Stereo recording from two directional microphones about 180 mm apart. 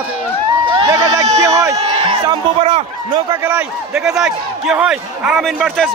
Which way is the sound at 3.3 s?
10° right (ahead or behind).